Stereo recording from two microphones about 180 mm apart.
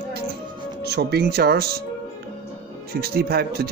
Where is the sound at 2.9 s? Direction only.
60° right (ahead or behind).